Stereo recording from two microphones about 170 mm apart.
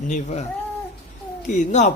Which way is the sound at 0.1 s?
40° left (ahead or behind).